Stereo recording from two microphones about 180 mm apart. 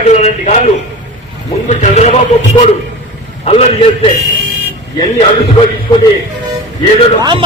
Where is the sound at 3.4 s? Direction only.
35° left (ahead or behind).